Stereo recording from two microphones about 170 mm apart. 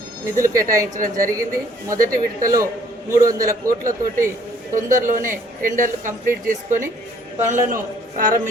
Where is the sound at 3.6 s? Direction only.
50° right (ahead or behind).